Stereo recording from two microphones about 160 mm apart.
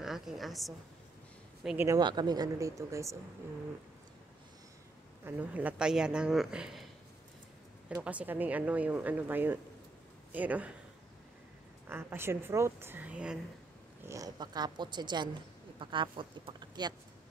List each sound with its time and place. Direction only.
0.0 s a woman's voice: centre (ahead or behind)
1.8 s speech: 20° right (ahead or behind)
5.2 s speech: 10° right (ahead or behind)
8.0 s speech: 10° right (ahead or behind)
11.9 s speech: 15° right (ahead or behind)
14.0 s speech: 20° right (ahead or behind)